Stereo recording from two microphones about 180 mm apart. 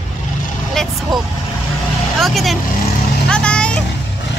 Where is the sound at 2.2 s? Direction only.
Centre (ahead or behind).